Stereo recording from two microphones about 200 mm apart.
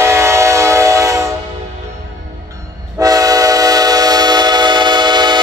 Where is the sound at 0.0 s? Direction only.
15° right (ahead or behind).